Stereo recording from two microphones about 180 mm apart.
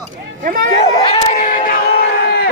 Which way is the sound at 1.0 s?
30° left (ahead or behind).